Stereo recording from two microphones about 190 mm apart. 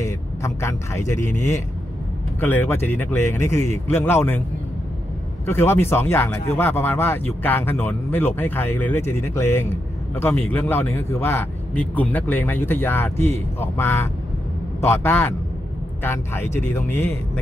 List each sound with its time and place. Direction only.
0.0 s a sound: 15° left (ahead or behind)
1.2 s speech: 40° left (ahead or behind)
2.4 s speech: 10° left (ahead or behind)
5.5 s speech: 10° left (ahead or behind)